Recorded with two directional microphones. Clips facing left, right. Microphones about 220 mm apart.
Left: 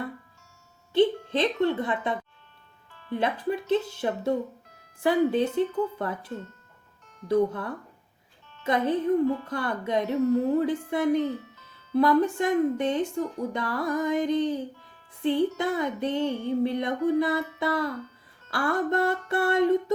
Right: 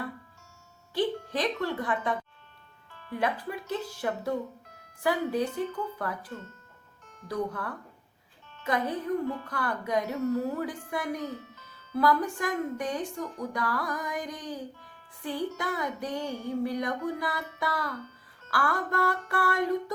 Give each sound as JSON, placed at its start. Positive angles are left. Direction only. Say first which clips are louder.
{"t": 0.9, "sound": "a woman's voice", "louder": "left 7 dB", "side_deg": 25}